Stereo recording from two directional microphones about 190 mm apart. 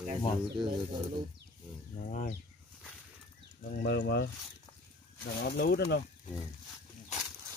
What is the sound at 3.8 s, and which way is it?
Speech, 60° left (ahead or behind).